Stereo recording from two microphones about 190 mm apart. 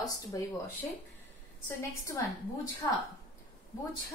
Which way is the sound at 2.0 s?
15° left (ahead or behind).